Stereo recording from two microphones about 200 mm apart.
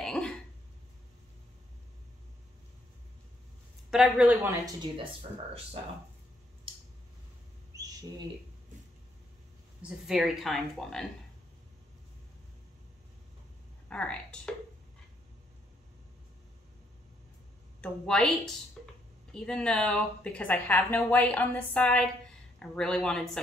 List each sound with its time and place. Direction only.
0.0 s a sound: 5° left (ahead or behind)
3.9 s speech: 5° right (ahead or behind)
7.7 s a sound: 15° right (ahead or behind)
9.8 s speech: 5° right (ahead or behind)
13.8 s speech: 5° left (ahead or behind)
17.7 s a woman's voice: 5° left (ahead or behind)